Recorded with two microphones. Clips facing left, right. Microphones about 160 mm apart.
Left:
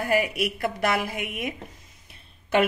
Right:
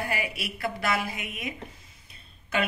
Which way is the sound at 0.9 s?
55° left (ahead or behind).